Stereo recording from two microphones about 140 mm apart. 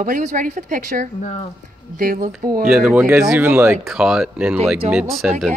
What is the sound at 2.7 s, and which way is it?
Speech, 5° right (ahead or behind).